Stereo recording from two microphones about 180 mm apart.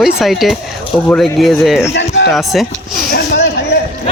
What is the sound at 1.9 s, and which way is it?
Speech, 75° left (ahead or behind).